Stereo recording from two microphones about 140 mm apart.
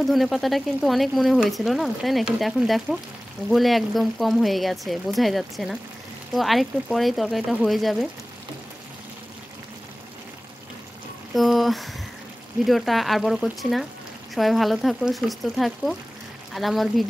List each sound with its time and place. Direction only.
0.0 s speech: centre (ahead or behind)
11.3 s a sound: centre (ahead or behind)
12.6 s speech: centre (ahead or behind)